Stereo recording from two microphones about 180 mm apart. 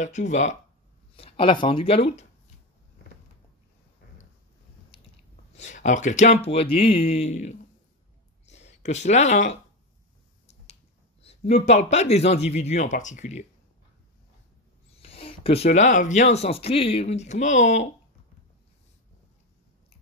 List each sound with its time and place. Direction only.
0.0 s speech: 40° left (ahead or behind)
5.6 s speech: 40° left (ahead or behind)
11.2 s speech: 35° left (ahead or behind)
15.0 s speech: 35° left (ahead or behind)